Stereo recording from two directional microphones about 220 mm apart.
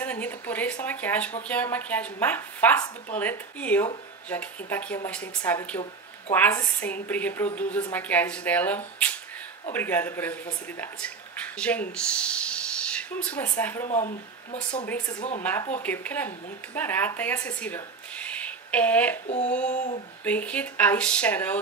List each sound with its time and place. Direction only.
0.0 s a woman's voice: 5° left (ahead or behind)
13.8 s speech: 30° left (ahead or behind)
14.9 s a woman's voice: 15° left (ahead or behind)
19.2 s speech: 30° left (ahead or behind)
20.2 s a woman's voice: 5° left (ahead or behind)